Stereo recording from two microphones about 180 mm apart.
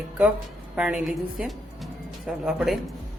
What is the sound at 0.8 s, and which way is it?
A woman's voice, 5° right (ahead or behind).